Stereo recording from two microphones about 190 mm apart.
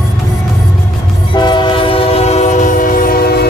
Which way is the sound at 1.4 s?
25° left (ahead or behind).